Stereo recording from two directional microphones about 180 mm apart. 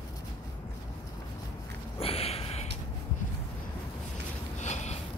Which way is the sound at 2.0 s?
30° left (ahead or behind).